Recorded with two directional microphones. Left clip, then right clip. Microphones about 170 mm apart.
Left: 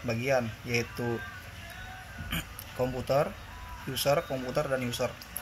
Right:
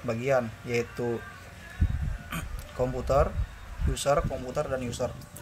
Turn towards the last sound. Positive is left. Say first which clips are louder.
# even
turn(degrees=-5)  # may be behind; listen again after turning